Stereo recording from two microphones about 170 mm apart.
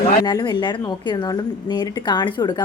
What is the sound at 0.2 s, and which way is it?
A woman's voice, 25° left (ahead or behind).